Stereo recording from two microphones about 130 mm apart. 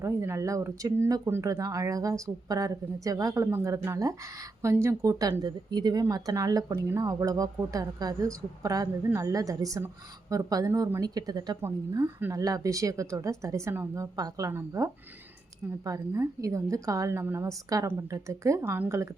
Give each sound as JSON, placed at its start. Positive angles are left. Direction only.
{"t": 0.0, "sound": "speech", "side_deg": -20}